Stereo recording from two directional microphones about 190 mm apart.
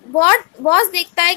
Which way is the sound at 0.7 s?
45° left (ahead or behind).